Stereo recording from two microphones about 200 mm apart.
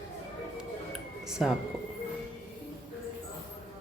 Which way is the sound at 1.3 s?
5° right (ahead or behind).